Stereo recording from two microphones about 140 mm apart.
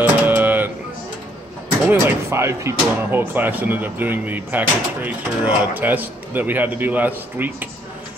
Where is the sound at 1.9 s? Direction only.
15° right (ahead or behind).